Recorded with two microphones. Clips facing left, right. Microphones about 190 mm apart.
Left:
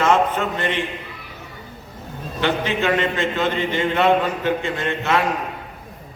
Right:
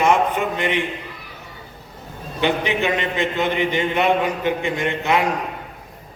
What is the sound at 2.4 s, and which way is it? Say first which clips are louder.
A man's voice: right 1 dB; 15° right (ahead or behind).